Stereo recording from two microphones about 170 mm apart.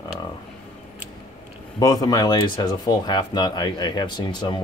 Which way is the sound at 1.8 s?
20° left (ahead or behind).